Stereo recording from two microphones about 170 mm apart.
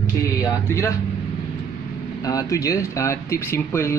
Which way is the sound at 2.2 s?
20° left (ahead or behind).